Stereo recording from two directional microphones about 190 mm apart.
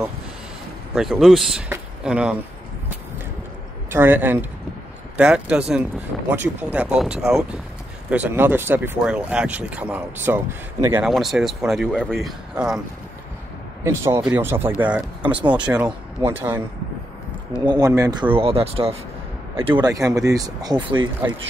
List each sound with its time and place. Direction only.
0.9 s speech: centre (ahead or behind)
1.7 s a sound: 5° right (ahead or behind)
3.9 s speech: 10° right (ahead or behind)
11.1 s speech: centre (ahead or behind)
13.8 s speech: 15° right (ahead or behind)
17.6 s speech: 20° right (ahead or behind)
18.3 s speech: 30° right (ahead or behind)